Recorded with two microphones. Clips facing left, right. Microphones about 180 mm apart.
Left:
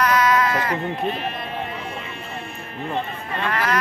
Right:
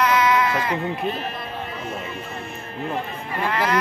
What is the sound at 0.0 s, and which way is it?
Sheep, 25° right (ahead or behind).